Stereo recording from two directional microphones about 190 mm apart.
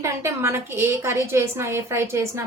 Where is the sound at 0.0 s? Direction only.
15° right (ahead or behind).